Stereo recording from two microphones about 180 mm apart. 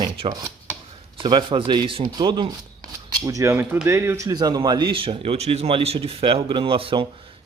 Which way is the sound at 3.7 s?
10° right (ahead or behind).